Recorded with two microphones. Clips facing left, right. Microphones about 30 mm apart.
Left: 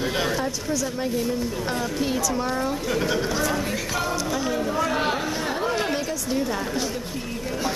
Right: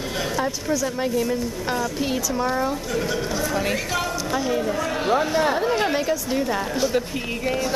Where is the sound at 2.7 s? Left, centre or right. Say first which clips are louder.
Left 1 dB; centre.